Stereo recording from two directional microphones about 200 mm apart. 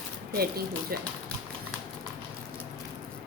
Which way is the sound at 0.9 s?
50° right (ahead or behind).